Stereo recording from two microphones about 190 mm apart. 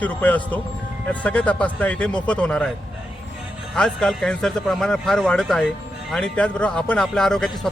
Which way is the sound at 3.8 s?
5° left (ahead or behind).